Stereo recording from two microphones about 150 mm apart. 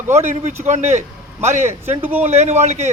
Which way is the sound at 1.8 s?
15° right (ahead or behind).